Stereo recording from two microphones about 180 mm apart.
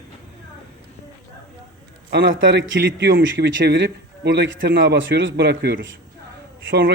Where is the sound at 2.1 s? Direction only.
90° right.